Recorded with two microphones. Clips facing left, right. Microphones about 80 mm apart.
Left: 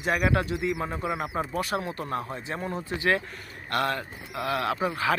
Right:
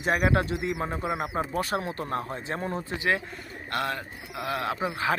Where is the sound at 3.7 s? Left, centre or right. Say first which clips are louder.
Left 3 dB; centre.